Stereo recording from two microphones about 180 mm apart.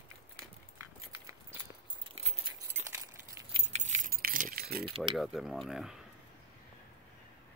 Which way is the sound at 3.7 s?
40° right (ahead or behind).